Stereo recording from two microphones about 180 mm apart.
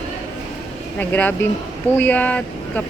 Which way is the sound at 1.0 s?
10° left (ahead or behind).